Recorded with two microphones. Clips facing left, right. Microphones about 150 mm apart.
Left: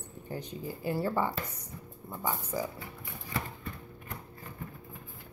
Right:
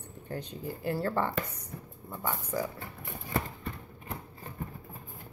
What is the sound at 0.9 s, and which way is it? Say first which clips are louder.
A woman's voice: even; 10° left (ahead or behind).